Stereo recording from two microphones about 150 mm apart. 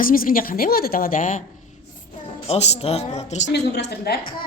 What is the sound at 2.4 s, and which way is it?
Speech, 45° left (ahead or behind).